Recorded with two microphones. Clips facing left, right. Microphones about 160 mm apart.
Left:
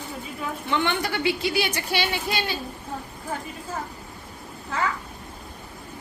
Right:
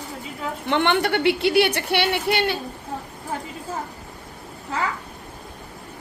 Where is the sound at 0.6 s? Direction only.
65° right (ahead or behind).